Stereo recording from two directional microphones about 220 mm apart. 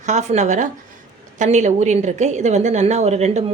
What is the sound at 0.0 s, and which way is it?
A woman's voice, 30° right (ahead or behind).